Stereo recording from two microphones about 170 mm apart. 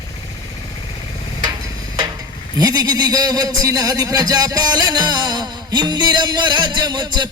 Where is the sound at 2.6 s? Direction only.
25° right (ahead or behind).